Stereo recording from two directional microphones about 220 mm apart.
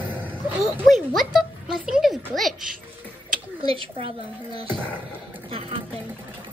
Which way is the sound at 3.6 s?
25° right (ahead or behind).